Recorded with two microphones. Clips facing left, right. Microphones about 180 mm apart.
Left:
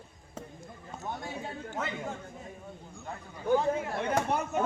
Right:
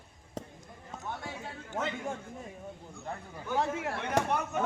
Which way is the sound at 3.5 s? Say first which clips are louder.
Even; 75° right (ahead or behind).